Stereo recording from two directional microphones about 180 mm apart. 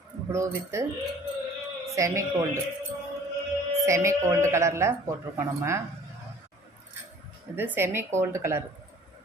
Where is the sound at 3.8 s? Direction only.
15° right (ahead or behind).